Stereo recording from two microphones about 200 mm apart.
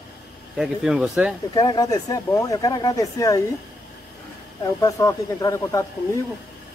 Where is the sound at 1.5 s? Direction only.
20° left (ahead or behind).